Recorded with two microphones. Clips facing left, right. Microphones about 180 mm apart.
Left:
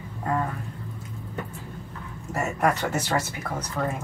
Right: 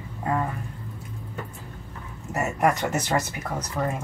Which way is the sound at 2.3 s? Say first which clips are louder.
Right 1 dB; 5° right (ahead or behind).